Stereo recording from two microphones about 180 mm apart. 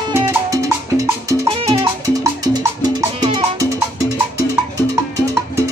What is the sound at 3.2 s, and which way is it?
Music, 20° right (ahead or behind).